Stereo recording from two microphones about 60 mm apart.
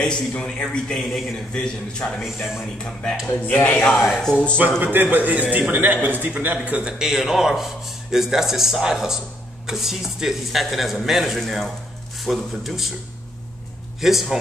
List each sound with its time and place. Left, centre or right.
0.4 s a man's voice: centre
3.3 s speech: left
3.9 s a man's voice: centre
4.6 s a man's voice: right
6.8 s a man's voice: centre
14.0 s speech: centre